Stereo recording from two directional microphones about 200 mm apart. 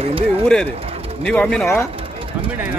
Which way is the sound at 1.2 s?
5° left (ahead or behind).